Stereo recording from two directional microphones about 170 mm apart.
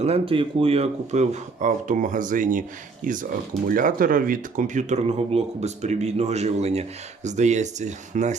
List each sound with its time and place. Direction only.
0.0 s speech: 35° right (ahead or behind)